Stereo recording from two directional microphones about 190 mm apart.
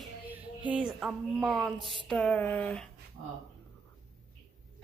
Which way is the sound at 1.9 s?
Centre (ahead or behind).